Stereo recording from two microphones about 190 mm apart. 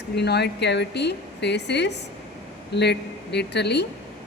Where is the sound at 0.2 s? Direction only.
60° left (ahead or behind).